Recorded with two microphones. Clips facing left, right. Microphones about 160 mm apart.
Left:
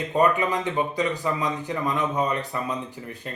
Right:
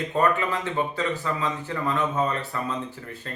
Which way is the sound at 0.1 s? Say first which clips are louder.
Left 3 dB; 15° left (ahead or behind).